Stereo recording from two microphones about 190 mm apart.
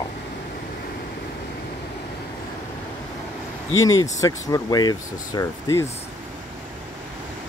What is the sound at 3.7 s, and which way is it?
Speech, 20° left (ahead or behind).